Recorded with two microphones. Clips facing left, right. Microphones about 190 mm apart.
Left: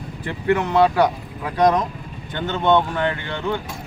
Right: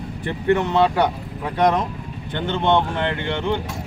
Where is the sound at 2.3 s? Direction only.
20° right (ahead or behind).